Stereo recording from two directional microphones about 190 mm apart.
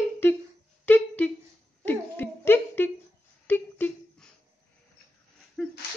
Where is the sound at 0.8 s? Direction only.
10° left (ahead or behind).